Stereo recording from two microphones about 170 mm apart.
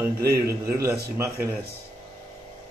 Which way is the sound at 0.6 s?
15° right (ahead or behind).